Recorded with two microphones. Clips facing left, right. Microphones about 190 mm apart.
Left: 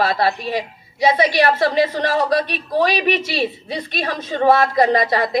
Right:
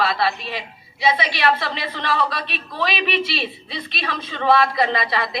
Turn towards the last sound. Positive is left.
turn(degrees=45)  # may be behind; listen again after turning